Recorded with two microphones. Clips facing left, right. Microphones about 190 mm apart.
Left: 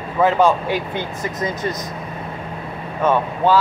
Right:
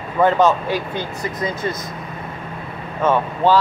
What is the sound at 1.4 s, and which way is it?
Speech, 40° left (ahead or behind).